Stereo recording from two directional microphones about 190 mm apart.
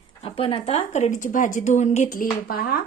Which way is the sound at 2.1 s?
50° left (ahead or behind).